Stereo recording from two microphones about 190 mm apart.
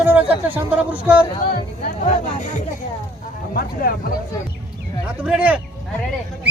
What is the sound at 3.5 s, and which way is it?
Speech, 50° left (ahead or behind).